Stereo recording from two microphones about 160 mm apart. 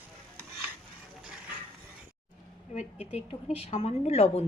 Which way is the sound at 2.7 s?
45° left (ahead or behind).